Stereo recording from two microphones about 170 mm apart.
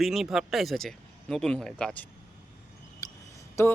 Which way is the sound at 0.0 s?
Centre (ahead or behind).